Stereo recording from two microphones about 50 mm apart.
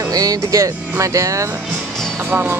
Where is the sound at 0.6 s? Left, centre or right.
Right.